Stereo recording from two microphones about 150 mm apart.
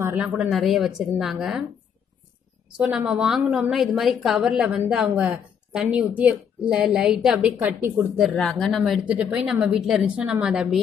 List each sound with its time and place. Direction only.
0.0 s a woman's voice: 10° right (ahead or behind)
2.8 s a woman's voice: 5° right (ahead or behind)
8.2 s a woman's voice: centre (ahead or behind)